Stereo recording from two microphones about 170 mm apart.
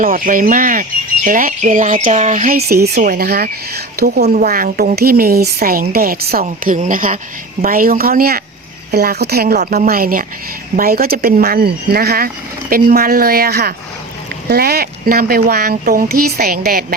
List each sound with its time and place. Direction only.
0.0 s speech: 55° right (ahead or behind)
2.6 s speech: 70° right (ahead or behind)
2.9 s speech: 55° right (ahead or behind)
6.4 s speech: 50° right (ahead or behind)